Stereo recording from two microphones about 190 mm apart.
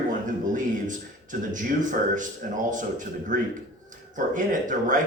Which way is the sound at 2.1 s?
40° right (ahead or behind).